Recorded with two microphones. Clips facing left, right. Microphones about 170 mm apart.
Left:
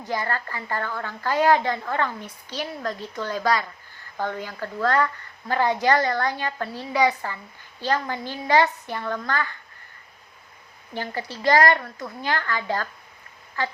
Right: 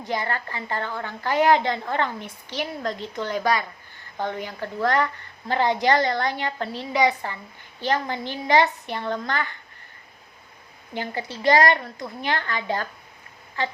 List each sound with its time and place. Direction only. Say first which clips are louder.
0.0 s a woman's voice: even; 20° right (ahead or behind)
10.9 s a woman's voice: right 1 dB; 20° right (ahead or behind)